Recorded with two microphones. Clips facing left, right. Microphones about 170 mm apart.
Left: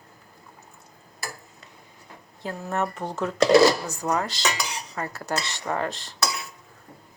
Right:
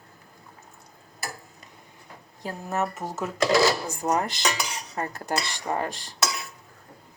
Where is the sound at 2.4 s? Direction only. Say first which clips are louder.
Left 1 dB; 5° right (ahead or behind).